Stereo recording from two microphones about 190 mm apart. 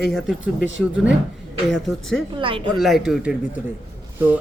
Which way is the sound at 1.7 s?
Centre (ahead or behind).